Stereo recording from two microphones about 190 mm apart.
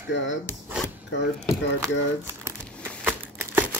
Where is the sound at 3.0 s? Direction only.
15° right (ahead or behind).